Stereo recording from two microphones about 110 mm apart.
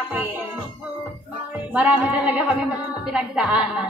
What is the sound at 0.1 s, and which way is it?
Music, 15° right (ahead or behind).